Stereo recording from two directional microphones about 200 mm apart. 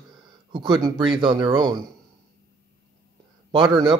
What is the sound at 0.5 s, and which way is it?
Speech, 25° right (ahead or behind).